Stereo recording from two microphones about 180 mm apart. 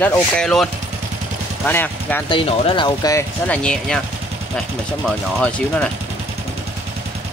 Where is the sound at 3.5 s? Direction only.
5° left (ahead or behind).